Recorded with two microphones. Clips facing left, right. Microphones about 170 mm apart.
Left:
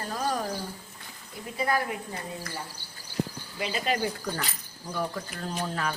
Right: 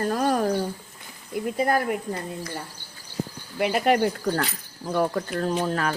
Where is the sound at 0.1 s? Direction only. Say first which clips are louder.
Right 5 dB; 60° right (ahead or behind).